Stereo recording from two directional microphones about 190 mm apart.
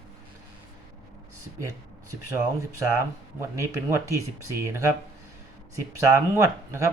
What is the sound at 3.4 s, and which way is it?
Speech, 15° right (ahead or behind).